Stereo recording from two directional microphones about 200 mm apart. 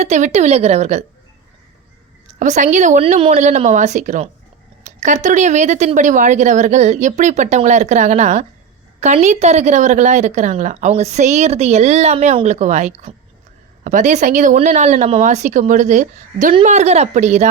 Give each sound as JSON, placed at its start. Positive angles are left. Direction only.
{"t": 0.0, "sound": "a woman's voice", "side_deg": -35}
{"t": 2.4, "sound": "a woman's voice", "side_deg": -40}